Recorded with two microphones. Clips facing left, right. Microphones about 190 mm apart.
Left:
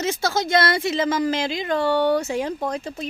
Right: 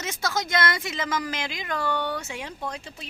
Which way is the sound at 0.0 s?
30° left (ahead or behind).